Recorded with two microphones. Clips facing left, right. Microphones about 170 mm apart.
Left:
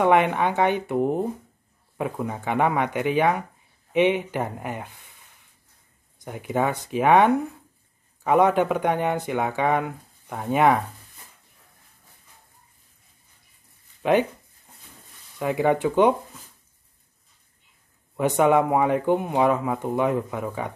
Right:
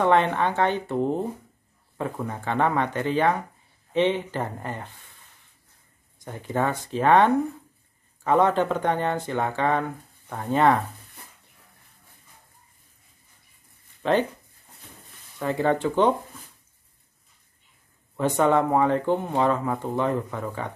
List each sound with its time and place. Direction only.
0.0 s speech: 15° left (ahead or behind)
6.2 s speech: 10° left (ahead or behind)
14.0 s speech: 10° left (ahead or behind)
15.3 s speech: 10° left (ahead or behind)
18.1 s speech: 15° left (ahead or behind)